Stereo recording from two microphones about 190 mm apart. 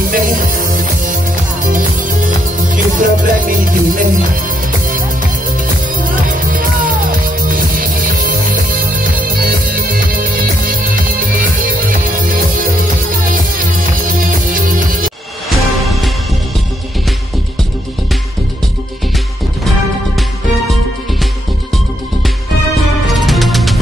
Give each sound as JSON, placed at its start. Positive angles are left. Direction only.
{"t": 0.1, "sound": "music", "side_deg": -45}
{"t": 5.9, "sound": "music", "side_deg": -45}
{"t": 15.5, "sound": "music", "side_deg": 0}
{"t": 23.0, "sound": "music", "side_deg": 0}